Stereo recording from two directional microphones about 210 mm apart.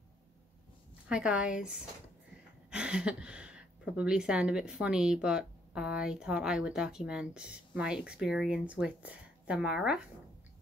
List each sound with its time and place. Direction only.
1.0 s a woman's voice: 5° right (ahead or behind)